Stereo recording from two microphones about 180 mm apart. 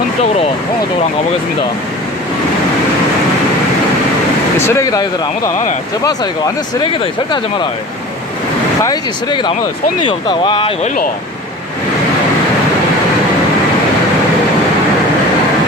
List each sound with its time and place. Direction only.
4.6 s a man's voice: 15° left (ahead or behind)
8.8 s speech: 25° left (ahead or behind)